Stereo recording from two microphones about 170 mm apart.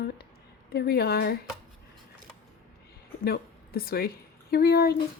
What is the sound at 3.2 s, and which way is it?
A woman's voice, 65° left (ahead or behind).